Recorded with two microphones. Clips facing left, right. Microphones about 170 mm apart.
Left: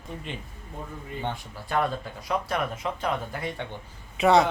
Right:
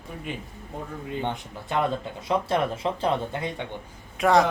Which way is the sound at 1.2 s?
20° right (ahead or behind).